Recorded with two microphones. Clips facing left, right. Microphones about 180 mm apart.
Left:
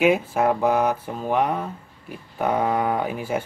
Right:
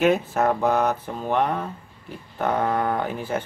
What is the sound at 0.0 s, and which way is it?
Speech, 10° left (ahead or behind).